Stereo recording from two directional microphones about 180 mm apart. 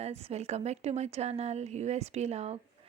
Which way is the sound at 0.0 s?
35° right (ahead or behind).